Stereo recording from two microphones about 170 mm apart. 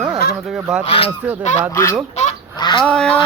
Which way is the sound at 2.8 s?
5° left (ahead or behind).